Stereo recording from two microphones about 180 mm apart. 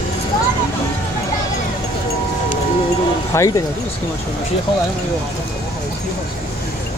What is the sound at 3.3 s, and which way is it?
Speech, 15° left (ahead or behind).